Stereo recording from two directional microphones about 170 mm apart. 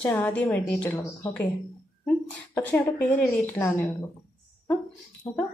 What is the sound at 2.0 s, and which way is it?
Speech, 10° left (ahead or behind).